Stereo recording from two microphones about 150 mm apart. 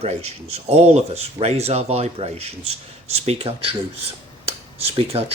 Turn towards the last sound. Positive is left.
turn(degrees=-40)  # may be behind; listen again after turning